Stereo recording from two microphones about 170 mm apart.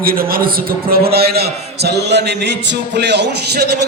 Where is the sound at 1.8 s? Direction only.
75° right (ahead or behind).